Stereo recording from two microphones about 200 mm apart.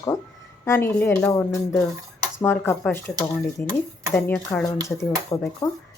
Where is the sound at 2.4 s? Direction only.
10° left (ahead or behind).